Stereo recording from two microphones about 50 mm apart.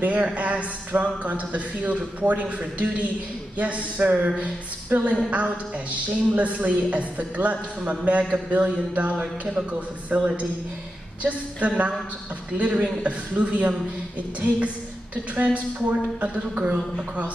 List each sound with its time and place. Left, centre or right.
0.0 s a woman's voice: right
9.2 s speech: centre
9.7 s a woman's voice: right
15.3 s a woman's voice: right
16.5 s speech: right